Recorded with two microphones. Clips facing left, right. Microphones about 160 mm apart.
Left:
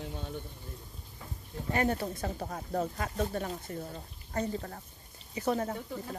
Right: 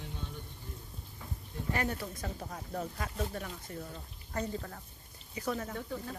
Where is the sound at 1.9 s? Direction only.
30° left (ahead or behind).